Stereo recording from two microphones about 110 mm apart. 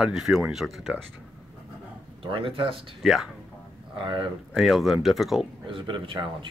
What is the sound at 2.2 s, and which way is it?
Speech, 55° right (ahead or behind).